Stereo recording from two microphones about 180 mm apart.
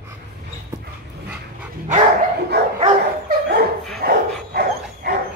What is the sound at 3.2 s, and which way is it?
Dog, 60° right (ahead or behind).